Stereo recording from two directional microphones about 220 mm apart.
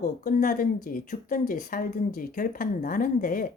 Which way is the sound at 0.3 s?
40° left (ahead or behind).